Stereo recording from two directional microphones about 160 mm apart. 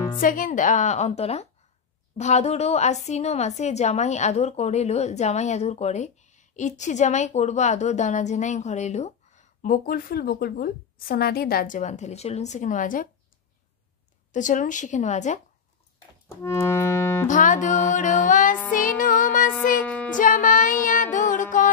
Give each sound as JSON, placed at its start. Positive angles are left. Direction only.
{"t": 0.2, "sound": "speech", "side_deg": 55}
{"t": 14.3, "sound": "speech", "side_deg": 50}
{"t": 16.3, "sound": "music", "side_deg": 15}
{"t": 17.3, "sound": "speech", "side_deg": 50}
{"t": 18.7, "sound": "music", "side_deg": 60}
{"t": 19.5, "sound": "music", "side_deg": 10}
{"t": 20.2, "sound": "music", "side_deg": 55}